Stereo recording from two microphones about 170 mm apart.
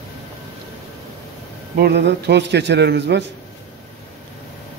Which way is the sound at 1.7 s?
80° right.